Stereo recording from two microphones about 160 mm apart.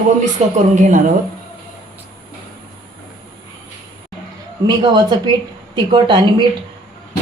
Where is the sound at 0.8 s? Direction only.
50° right (ahead or behind).